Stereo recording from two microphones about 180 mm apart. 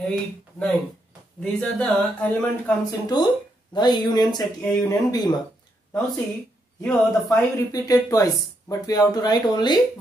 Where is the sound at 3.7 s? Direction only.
25° left (ahead or behind).